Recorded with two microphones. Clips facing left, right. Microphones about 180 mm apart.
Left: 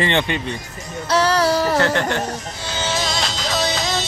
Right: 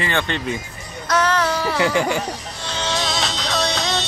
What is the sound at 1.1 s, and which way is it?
Music, 35° left (ahead or behind).